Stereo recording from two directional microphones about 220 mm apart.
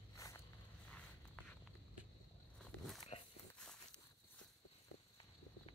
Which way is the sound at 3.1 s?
30° left (ahead or behind).